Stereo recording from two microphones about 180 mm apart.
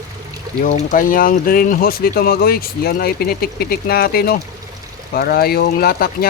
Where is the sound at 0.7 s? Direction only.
50° left (ahead or behind).